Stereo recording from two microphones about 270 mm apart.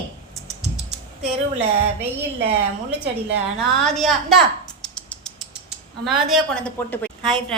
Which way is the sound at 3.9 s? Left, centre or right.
Centre.